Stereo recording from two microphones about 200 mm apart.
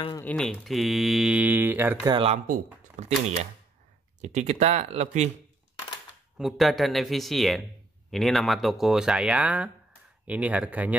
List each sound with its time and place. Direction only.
0.2 s speech: 5° left (ahead or behind); by 2.1 s 10° right (ahead or behind)
2.1 s speech: 30° right (ahead or behind)
6.3 s speech: centre (ahead or behind)